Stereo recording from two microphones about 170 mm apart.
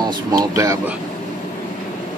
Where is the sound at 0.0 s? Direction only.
20° right (ahead or behind).